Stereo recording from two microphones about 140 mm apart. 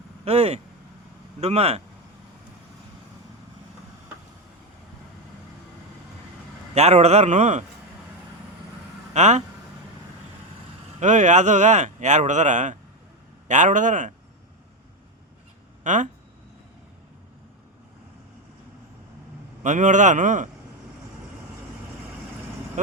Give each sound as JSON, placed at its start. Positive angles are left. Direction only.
{"t": 0.3, "sound": "speech", "side_deg": -45}
{"t": 6.7, "sound": "speech", "side_deg": -50}
{"t": 9.1, "sound": "speech", "side_deg": -55}
{"t": 11.0, "sound": "speech", "side_deg": -60}
{"t": 15.8, "sound": "speech", "side_deg": -60}
{"t": 19.6, "sound": "speech", "side_deg": -60}